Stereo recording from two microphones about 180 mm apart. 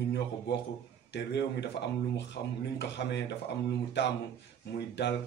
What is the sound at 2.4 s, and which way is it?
Speech, 60° left (ahead or behind).